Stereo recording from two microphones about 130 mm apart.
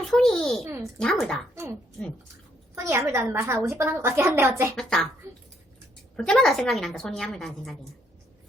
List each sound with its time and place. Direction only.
0.1 s a sound: centre (ahead or behind)
0.6 s speech: 20° right (ahead or behind)
0.9 s a woman's voice: 5° left (ahead or behind)
2.7 s speech: 20° right (ahead or behind)
4.7 s a woman's voice: 5° left (ahead or behind)
6.1 s a woman's voice: 5° left (ahead or behind)